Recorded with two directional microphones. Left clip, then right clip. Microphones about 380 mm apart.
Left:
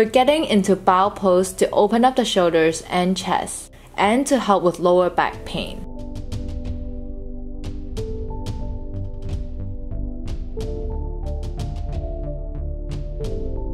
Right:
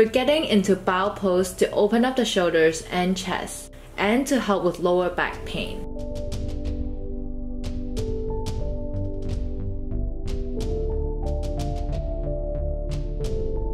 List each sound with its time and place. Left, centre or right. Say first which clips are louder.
0.0 s speech: left 3 dB; centre